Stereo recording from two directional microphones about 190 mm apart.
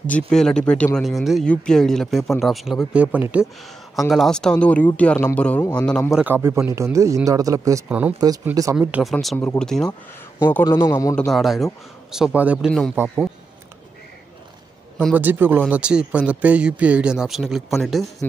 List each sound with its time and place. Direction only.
0.3 s speech: 5° left (ahead or behind)
6.1 s speech: 10° right (ahead or behind)
8.7 s speech: centre (ahead or behind)
10.4 s speech: 15° left (ahead or behind)
11.1 s speech: centre (ahead or behind)
15.1 s speech: 10° right (ahead or behind)